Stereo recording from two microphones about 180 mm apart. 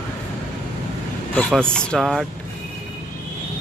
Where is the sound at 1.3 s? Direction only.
5° left (ahead or behind).